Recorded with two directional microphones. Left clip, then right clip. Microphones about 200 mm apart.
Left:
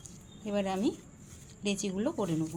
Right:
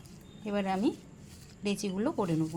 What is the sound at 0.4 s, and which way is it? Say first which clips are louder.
Speech: right 1 dB; 15° right (ahead or behind).